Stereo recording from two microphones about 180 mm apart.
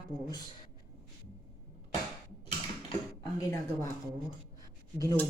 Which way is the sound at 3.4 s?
20° left (ahead or behind).